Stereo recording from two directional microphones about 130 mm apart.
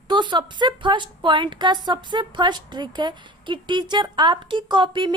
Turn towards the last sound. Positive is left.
turn(degrees=-35)  # may be behind; listen again after turning